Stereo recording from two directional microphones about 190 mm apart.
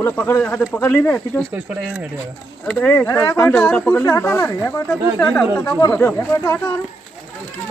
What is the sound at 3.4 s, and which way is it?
Speech, 5° left (ahead or behind).